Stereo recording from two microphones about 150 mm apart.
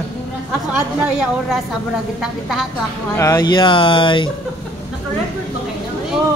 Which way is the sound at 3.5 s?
35° left (ahead or behind).